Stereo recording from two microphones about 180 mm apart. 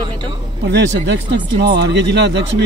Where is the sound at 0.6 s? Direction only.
70° right (ahead or behind).